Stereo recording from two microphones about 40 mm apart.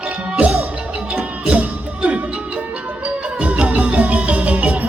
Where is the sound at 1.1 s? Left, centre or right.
Right.